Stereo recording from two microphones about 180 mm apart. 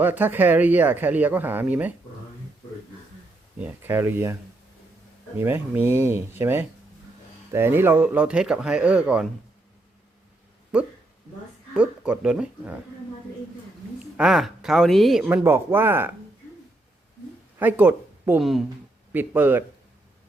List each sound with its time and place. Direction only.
0.0 s speech: 10° right (ahead or behind)
3.6 s speech: 10° right (ahead or behind)
5.4 s speech: 10° right (ahead or behind)
11.7 s speech: 5° right (ahead or behind)
14.0 s speech: centre (ahead or behind)
17.6 s speech: 10° right (ahead or behind)